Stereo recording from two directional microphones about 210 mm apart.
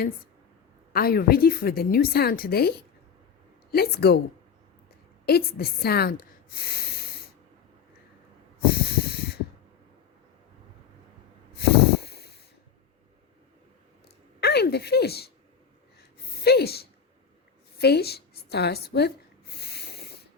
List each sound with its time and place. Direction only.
0.9 s a woman's voice: 45° left (ahead or behind)
5.2 s a woman's voice: 50° left (ahead or behind)
8.9 s snort: 50° left (ahead or behind)
11.5 s a sound: 50° left (ahead or behind)
14.4 s speech: 50° left (ahead or behind)
16.3 s speech: 50° left (ahead or behind)
17.7 s a sound: 50° left (ahead or behind)